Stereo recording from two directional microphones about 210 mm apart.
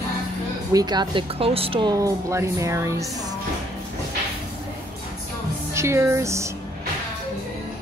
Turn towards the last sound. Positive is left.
turn(degrees=-15)  # may be behind; listen again after turning